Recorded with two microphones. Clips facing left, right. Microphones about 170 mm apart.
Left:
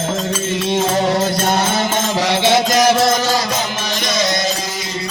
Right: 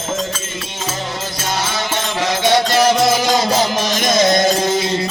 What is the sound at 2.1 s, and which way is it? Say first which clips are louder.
Music: even; 30° left (ahead or behind).